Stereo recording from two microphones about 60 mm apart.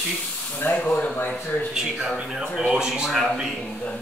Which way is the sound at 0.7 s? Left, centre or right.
Left.